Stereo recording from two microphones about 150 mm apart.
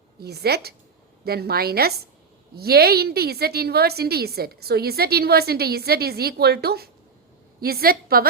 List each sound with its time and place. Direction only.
0.2 s a woman's voice: 90° right